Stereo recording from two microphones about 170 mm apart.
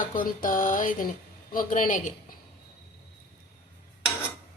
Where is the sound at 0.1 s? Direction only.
55° left (ahead or behind).